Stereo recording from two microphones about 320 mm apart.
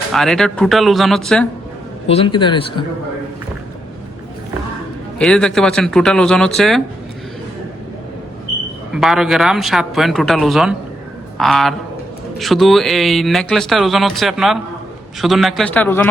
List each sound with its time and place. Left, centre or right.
0.1 s speech: centre
2.0 s a man's voice: centre
5.2 s speech: centre
8.9 s speech: centre